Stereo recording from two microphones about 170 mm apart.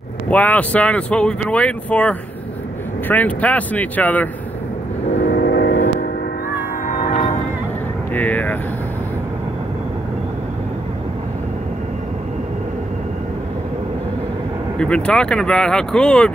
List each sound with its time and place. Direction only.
0.3 s speech: 10° left (ahead or behind)
5.3 s vehicle: 70° left (ahead or behind)
6.9 s music: 55° left (ahead or behind)
8.1 s speech: 10° left (ahead or behind)
14.8 s speech: 5° left (ahead or behind)